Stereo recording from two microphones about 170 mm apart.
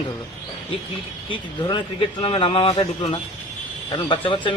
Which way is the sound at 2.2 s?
35° left (ahead or behind).